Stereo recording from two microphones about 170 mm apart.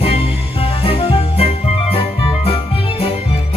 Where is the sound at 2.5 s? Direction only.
35° left (ahead or behind).